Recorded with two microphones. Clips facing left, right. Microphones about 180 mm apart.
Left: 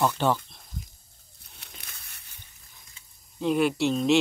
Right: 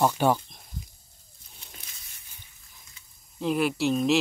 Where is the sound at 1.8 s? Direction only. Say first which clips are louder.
Left 3 dB; 60° left (ahead or behind).